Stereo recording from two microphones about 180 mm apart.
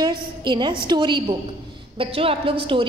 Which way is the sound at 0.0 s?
25° right (ahead or behind).